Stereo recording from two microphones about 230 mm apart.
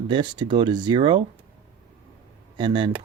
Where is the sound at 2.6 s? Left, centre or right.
Right.